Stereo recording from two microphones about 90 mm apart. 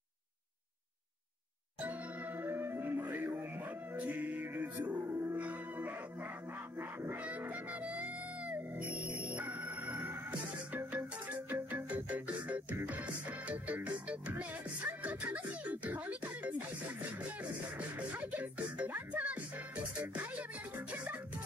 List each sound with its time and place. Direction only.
2.4 s music: 25° right (ahead or behind)
17.7 s music: 15° right (ahead or behind)